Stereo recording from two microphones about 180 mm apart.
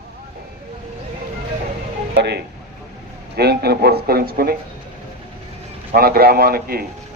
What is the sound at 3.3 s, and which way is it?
Speech, 60° right (ahead or behind).